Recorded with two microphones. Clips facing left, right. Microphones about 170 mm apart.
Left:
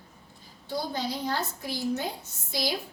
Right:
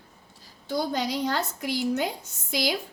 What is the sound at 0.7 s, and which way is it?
A woman's voice, 80° right.